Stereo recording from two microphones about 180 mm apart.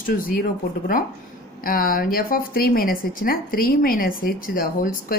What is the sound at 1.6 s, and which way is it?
Speech, 55° left (ahead or behind).